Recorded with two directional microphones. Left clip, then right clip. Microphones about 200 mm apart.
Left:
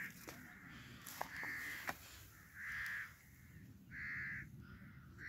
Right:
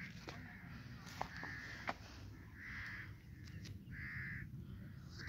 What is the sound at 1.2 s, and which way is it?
Crow, 45° left (ahead or behind).